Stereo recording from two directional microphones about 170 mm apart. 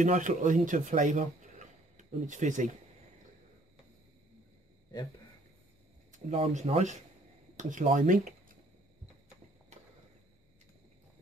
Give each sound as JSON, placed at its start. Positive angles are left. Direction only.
{"t": 0.0, "sound": "speech", "side_deg": -45}
{"t": 6.1, "sound": "speech", "side_deg": -40}
{"t": 8.1, "sound": "a sound", "side_deg": -50}